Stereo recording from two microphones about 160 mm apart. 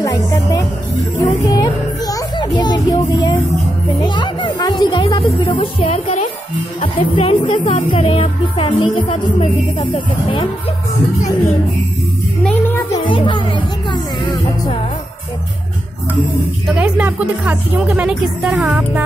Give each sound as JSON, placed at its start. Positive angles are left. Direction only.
{"t": 0.0, "sound": "music", "side_deg": 20}
{"t": 12.4, "sound": "music", "side_deg": 15}
{"t": 13.1, "sound": "speech", "side_deg": 30}
{"t": 16.6, "sound": "speech", "side_deg": -10}